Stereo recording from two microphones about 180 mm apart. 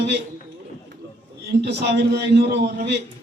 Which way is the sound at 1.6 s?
70° right (ahead or behind).